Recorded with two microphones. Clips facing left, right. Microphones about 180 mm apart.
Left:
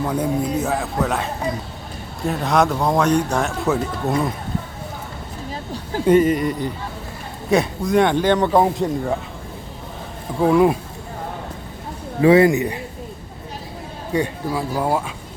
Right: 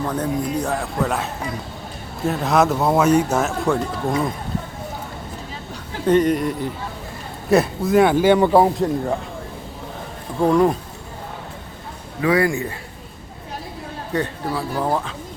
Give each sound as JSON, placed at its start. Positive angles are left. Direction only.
{"t": 0.0, "sound": "speech", "side_deg": 10}
{"t": 6.1, "sound": "speech", "side_deg": 5}
{"t": 10.4, "sound": "speech", "side_deg": 5}
{"t": 12.2, "sound": "a man's voice", "side_deg": 25}
{"t": 14.1, "sound": "speech", "side_deg": 10}